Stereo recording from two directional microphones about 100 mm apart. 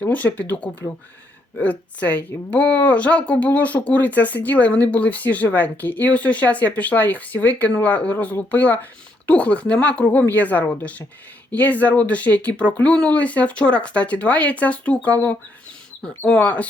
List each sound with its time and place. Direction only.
0.0 s speech: 15° left (ahead or behind)